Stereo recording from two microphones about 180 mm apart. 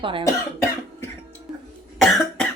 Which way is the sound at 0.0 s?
30° right (ahead or behind).